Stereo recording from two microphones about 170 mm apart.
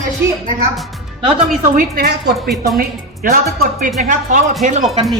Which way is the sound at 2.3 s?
Centre (ahead or behind).